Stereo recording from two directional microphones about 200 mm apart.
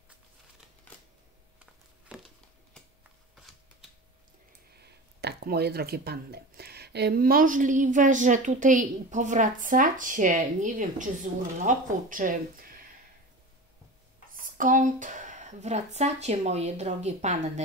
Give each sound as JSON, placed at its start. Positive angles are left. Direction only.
{"t": 2.0, "sound": "a sound", "side_deg": -5}
{"t": 4.8, "sound": "speech", "side_deg": -55}
{"t": 14.3, "sound": "speech", "side_deg": -40}